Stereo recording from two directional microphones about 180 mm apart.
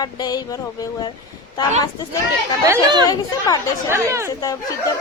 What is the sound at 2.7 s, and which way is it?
Speech, 25° right (ahead or behind).